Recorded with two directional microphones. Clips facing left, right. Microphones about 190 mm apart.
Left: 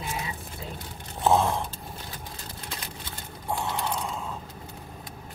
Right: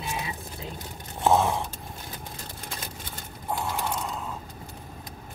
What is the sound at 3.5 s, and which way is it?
Mechanisms, 5° right (ahead or behind).